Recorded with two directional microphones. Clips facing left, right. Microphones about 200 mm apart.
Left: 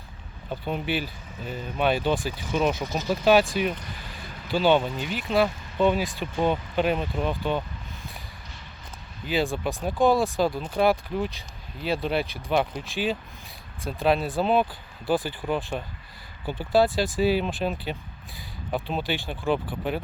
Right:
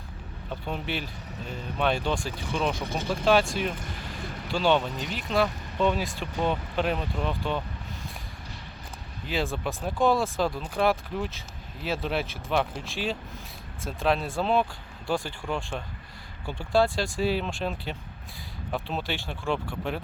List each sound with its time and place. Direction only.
0.6 s speech: 5° left (ahead or behind)
9.2 s speech: centre (ahead or behind)